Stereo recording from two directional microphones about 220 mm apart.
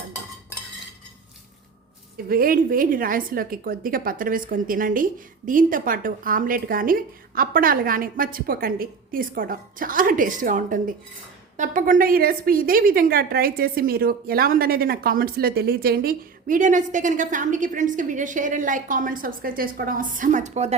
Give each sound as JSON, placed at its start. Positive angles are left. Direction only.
{"t": 2.3, "sound": "a woman's voice", "side_deg": -40}